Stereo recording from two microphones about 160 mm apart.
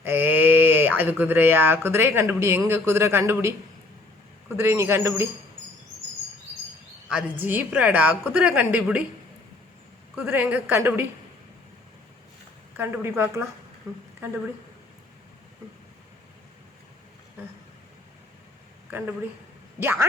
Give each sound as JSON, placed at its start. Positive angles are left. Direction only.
{"t": 0.0, "sound": "a woman's voice", "side_deg": -15}
{"t": 7.1, "sound": "a woman's voice", "side_deg": -10}
{"t": 10.2, "sound": "a woman's voice", "side_deg": -10}
{"t": 12.7, "sound": "a woman's voice", "side_deg": -15}
{"t": 18.9, "sound": "a woman's voice", "side_deg": -10}